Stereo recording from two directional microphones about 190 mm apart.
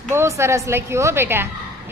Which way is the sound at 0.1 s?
15° right (ahead or behind).